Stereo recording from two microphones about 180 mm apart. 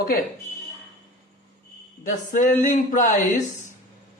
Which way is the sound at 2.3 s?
45° left (ahead or behind).